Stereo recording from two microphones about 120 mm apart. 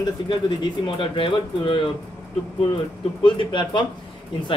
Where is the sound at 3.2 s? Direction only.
45° left (ahead or behind).